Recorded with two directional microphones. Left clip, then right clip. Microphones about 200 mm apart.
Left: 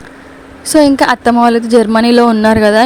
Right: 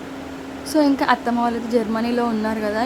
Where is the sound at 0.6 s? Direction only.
40° left (ahead or behind).